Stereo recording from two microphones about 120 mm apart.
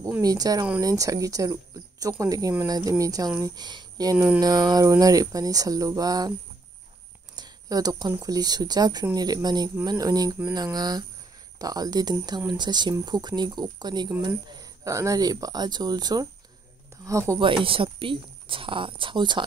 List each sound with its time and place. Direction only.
0.2 s speech: 30° right (ahead or behind)
7.3 s a sound: 35° right (ahead or behind)
8.1 s speech: 30° right (ahead or behind)
17.4 s speech: 45° right (ahead or behind)